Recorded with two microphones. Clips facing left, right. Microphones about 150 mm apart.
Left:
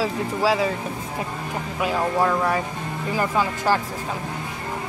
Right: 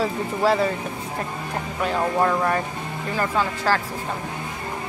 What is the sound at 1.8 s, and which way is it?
Speech, 5° left (ahead or behind).